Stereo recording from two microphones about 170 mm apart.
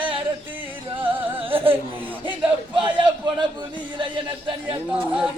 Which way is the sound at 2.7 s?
25° right (ahead or behind).